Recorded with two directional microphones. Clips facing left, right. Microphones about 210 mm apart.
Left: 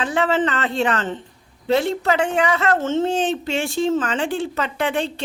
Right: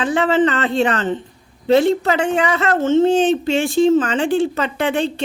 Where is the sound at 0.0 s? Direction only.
20° right (ahead or behind).